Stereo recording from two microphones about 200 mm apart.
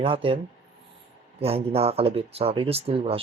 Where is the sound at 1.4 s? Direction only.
30° right (ahead or behind).